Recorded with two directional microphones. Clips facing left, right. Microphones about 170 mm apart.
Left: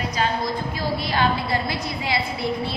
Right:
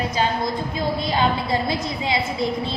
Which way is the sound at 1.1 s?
20° right (ahead or behind).